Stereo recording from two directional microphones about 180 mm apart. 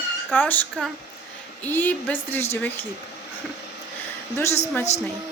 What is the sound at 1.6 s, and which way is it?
Speech, 10° left (ahead or behind).